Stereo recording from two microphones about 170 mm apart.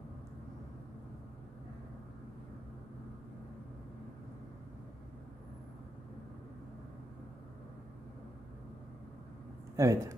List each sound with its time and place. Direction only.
9.8 s speech: 15° right (ahead or behind)